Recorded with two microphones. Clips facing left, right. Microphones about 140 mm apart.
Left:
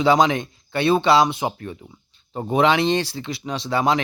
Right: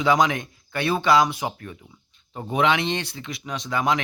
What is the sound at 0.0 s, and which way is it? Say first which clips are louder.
Speech: left 3 dB; 30° left (ahead or behind).